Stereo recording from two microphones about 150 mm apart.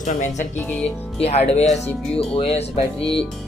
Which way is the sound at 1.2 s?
45° left (ahead or behind).